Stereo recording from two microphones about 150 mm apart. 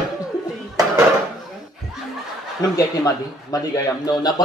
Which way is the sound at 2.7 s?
25° left (ahead or behind).